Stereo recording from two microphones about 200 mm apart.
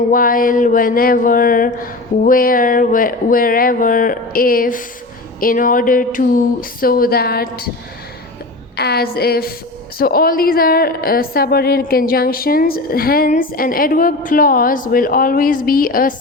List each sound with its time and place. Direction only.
0.1 s a woman's voice: 45° left (ahead or behind)
8.7 s a woman's voice: 55° left (ahead or behind)